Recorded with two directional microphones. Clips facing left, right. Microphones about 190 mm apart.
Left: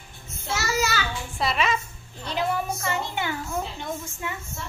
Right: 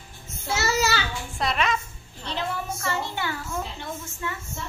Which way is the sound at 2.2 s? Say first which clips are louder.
Left 4 dB; 15° left (ahead or behind).